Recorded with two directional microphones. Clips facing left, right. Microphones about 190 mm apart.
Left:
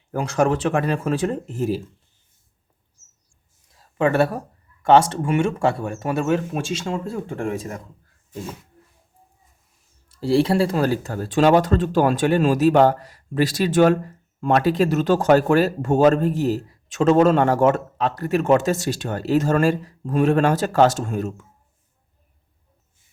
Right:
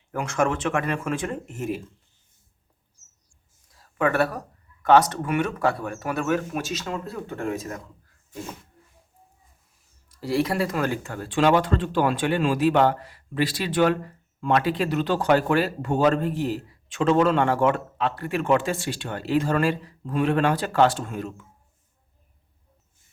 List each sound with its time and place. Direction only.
0.1 s speech: 35° left (ahead or behind)
3.9 s speech: 25° left (ahead or behind)
10.1 s speech: 30° left (ahead or behind)